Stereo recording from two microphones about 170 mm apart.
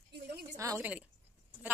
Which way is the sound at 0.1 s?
80° right.